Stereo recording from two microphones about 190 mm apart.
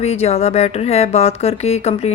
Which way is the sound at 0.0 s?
35° left (ahead or behind).